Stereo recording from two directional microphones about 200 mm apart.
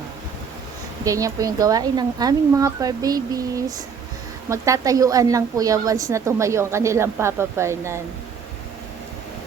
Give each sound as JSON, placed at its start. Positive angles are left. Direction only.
{"t": 1.0, "sound": "a woman's voice", "side_deg": -15}